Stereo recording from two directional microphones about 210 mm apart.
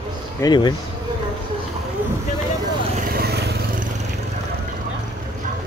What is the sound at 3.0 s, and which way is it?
Vehicle, 45° right (ahead or behind).